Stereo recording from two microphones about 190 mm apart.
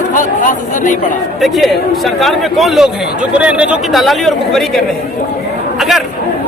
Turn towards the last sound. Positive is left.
turn(degrees=0)  # may be behind; listen again after turning